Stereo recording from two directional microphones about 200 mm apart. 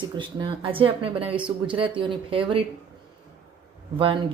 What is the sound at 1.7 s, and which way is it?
Speech, 25° right (ahead or behind).